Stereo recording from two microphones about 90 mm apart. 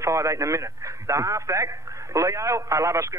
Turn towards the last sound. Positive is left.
turn(degrees=-35)  # may be behind; listen again after turning